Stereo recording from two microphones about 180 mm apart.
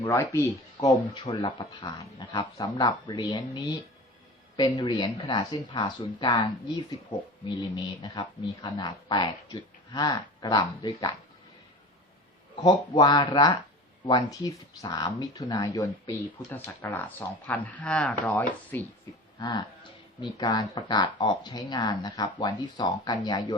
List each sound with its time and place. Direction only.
0.0 s speech: 15° left (ahead or behind)
1.2 s speech: 30° left (ahead or behind)
12.6 s speech: 25° left (ahead or behind)
19.4 s speech: 25° left (ahead or behind)